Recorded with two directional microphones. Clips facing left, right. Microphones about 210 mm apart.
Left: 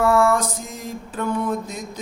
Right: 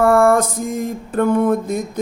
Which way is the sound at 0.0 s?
55° right (ahead or behind).